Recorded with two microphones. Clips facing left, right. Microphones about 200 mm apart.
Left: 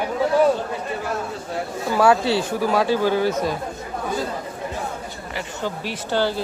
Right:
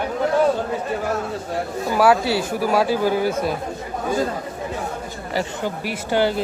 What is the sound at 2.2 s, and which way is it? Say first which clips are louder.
Speech: left 1 dB; 25° left (ahead or behind).